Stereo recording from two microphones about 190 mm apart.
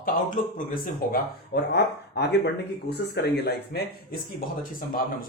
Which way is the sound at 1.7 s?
60° left (ahead or behind).